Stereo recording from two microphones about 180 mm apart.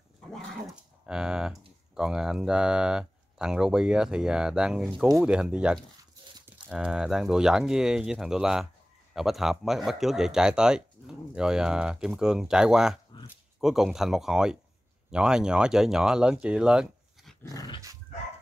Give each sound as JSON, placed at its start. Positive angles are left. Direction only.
{"t": 1.0, "sound": "speech", "side_deg": -5}
{"t": 17.4, "sound": "dog", "side_deg": 20}